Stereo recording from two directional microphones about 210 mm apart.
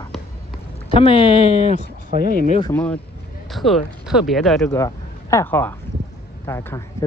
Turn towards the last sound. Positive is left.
turn(degrees=10)  # may be behind; listen again after turning